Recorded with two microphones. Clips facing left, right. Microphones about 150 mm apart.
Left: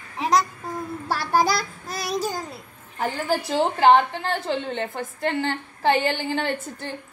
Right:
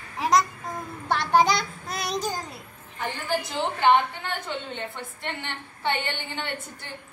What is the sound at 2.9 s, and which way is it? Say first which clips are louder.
A woman's voice: left 4 dB; 35° left (ahead or behind).